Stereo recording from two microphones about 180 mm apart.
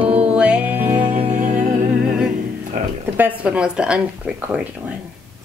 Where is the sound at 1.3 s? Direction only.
45° right (ahead or behind).